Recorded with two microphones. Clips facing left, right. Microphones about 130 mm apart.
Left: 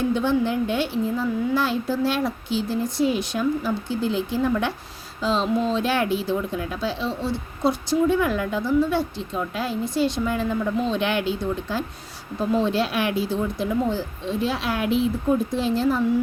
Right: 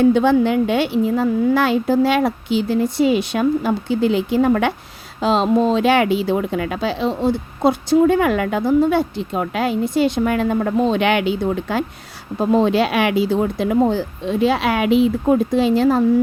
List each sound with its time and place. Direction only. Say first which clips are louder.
0.0 s speech: right 8 dB; 65° right (ahead or behind)
12.4 s speech: right 6 dB; 55° right (ahead or behind)